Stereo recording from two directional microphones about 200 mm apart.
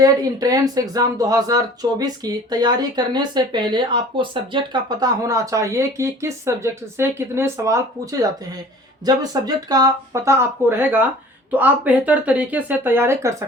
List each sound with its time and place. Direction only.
0.0 s speech: 20° right (ahead or behind)